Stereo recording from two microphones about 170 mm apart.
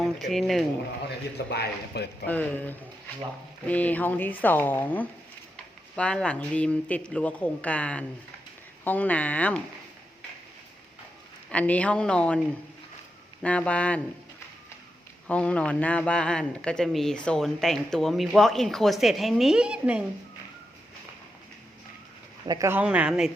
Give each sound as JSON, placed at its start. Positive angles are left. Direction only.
{"t": 0.0, "sound": "speech", "side_deg": 0}
{"t": 1.5, "sound": "a man's voice", "side_deg": 75}
{"t": 2.2, "sound": "speech", "side_deg": 10}
{"t": 11.5, "sound": "speech", "side_deg": 10}
{"t": 13.4, "sound": "speech", "side_deg": 10}
{"t": 15.3, "sound": "speech", "side_deg": 5}
{"t": 22.4, "sound": "speech", "side_deg": -20}